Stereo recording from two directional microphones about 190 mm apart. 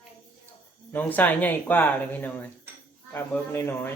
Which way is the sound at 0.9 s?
10° left (ahead or behind).